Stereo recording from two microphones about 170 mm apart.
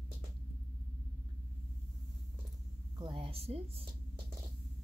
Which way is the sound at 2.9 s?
30° right (ahead or behind).